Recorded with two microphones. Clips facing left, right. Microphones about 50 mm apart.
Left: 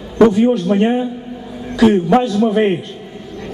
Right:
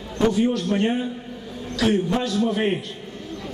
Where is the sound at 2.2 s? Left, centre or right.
Centre.